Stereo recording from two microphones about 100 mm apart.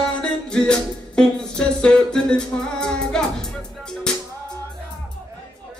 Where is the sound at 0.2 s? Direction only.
10° left (ahead or behind).